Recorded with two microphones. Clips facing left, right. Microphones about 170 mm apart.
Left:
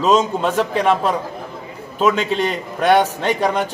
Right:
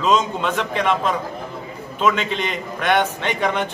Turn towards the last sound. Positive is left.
turn(degrees=40)  # may be behind; listen again after turning